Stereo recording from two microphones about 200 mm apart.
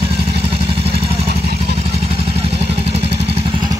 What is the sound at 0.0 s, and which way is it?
Vehicle, 30° right (ahead or behind).